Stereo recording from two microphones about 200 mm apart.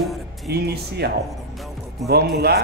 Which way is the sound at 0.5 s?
55° right (ahead or behind).